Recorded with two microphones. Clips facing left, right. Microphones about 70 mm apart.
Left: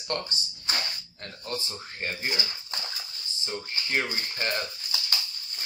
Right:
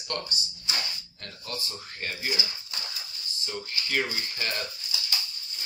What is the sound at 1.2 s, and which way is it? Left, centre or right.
Speech, left.